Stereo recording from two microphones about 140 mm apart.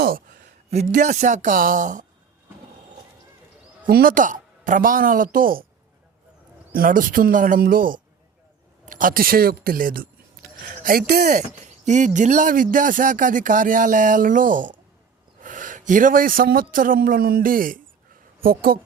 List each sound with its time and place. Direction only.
0.0 s a sound: 90° right
0.7 s speech: 55° right (ahead or behind)
3.8 s a woman's voice: 90° right
6.7 s a woman's voice: 80° right
8.9 s speech: 80° right
11.6 s a man's voice: 60° right (ahead or behind); by 18.8 s 90° right